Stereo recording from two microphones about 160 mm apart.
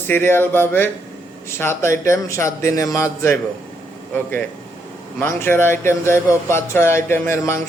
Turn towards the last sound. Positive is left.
turn(degrees=15)  # may be behind; listen again after turning